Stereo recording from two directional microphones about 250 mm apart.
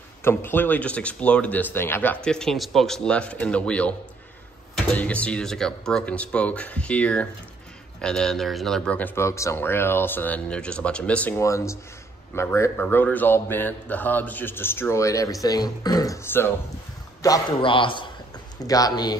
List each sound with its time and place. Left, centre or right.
0.2 s speech: centre
4.9 s a man's voice: centre